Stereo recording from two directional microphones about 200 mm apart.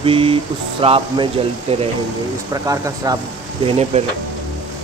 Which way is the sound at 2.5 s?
15° right (ahead or behind).